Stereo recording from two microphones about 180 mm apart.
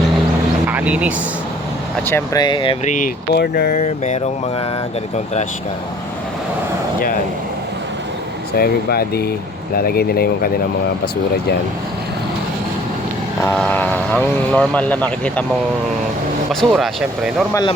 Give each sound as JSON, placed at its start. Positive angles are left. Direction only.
{"t": 0.7, "sound": "speech", "side_deg": -10}
{"t": 2.0, "sound": "speech", "side_deg": 15}
{"t": 2.8, "sound": "speech", "side_deg": 45}
{"t": 3.3, "sound": "speech", "side_deg": 60}
{"t": 3.7, "sound": "speech", "side_deg": 40}
{"t": 8.5, "sound": "speech", "side_deg": 55}
{"t": 13.5, "sound": "speech", "side_deg": 10}
{"t": 16.5, "sound": "speech", "side_deg": 0}
{"t": 17.5, "sound": "speech", "side_deg": 20}